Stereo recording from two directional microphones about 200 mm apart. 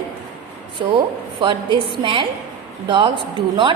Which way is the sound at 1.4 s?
25° right (ahead or behind).